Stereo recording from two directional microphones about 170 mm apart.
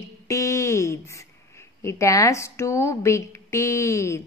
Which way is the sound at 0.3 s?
20° left (ahead or behind).